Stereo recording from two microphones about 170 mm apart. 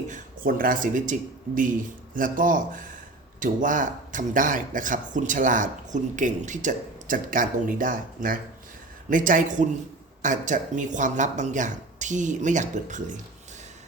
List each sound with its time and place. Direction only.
0.1 s speech: 55° right (ahead or behind)
2.1 s speech: 55° right (ahead or behind)